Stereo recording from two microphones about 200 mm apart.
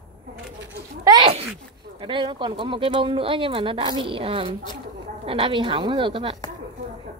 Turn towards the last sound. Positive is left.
turn(degrees=-25)  # may be behind; listen again after turning